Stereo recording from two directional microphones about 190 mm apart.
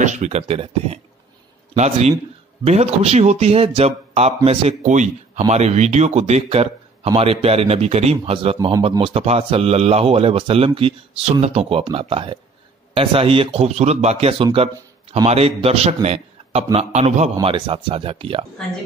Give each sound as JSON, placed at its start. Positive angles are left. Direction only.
{"t": 0.0, "sound": "speech", "side_deg": -40}